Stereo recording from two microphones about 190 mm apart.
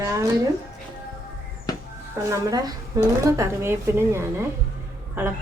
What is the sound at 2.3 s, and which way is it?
Speech, 15° right (ahead or behind).